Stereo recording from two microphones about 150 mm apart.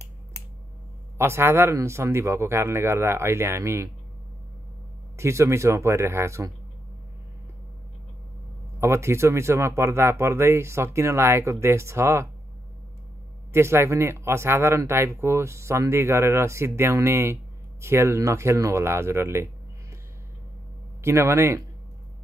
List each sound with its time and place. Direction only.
1.1 s speech: 15° right (ahead or behind)
5.1 s speech: 20° right (ahead or behind)
8.7 s speech: 15° right (ahead or behind)
13.5 s speech: 15° right (ahead or behind)
21.0 s speech: 20° right (ahead or behind)